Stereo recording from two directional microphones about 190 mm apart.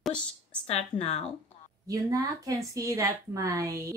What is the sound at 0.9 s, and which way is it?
Speech, 20° left (ahead or behind).